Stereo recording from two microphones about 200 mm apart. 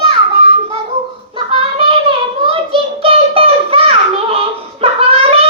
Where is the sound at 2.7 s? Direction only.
25° right (ahead or behind).